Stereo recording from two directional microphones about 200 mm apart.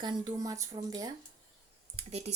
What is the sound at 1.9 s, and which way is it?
Speech, 30° right (ahead or behind).